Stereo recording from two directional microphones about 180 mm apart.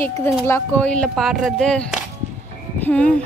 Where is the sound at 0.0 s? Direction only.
15° left (ahead or behind).